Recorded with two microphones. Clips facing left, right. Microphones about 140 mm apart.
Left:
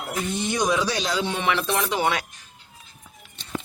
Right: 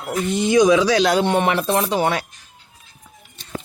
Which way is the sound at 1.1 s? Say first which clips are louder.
Right 7 dB; 55° right (ahead or behind).